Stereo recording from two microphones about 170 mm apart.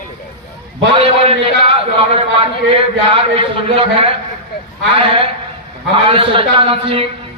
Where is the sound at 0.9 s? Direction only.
35° right (ahead or behind).